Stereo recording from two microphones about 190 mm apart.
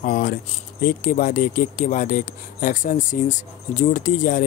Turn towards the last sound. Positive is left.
turn(degrees=45)  # may be behind; listen again after turning